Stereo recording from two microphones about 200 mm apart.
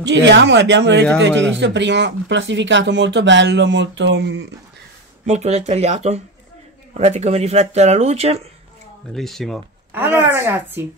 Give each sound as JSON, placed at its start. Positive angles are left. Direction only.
{"t": 0.0, "sound": "speech", "side_deg": -60}
{"t": 5.2, "sound": "speech", "side_deg": -35}
{"t": 9.1, "sound": "speech", "side_deg": 0}
{"t": 9.9, "sound": "speech", "side_deg": -10}